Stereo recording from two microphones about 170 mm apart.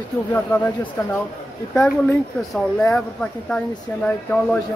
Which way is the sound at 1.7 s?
Centre (ahead or behind).